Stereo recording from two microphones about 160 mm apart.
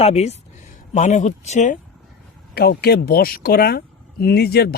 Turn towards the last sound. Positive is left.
turn(degrees=80)